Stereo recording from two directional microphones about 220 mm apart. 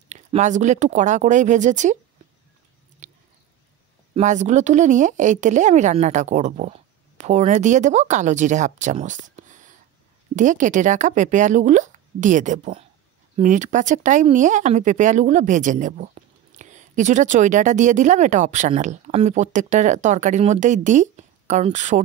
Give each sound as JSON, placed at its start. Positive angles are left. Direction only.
{"t": 0.1, "sound": "speech", "side_deg": -30}
{"t": 3.0, "sound": "a sound", "side_deg": -30}
{"t": 4.1, "sound": "speech", "side_deg": -30}